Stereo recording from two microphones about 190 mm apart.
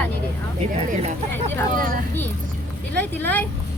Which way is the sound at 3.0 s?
10° left (ahead or behind).